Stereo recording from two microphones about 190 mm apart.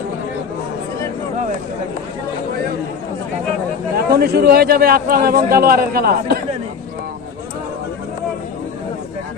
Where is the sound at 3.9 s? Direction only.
55° right (ahead or behind).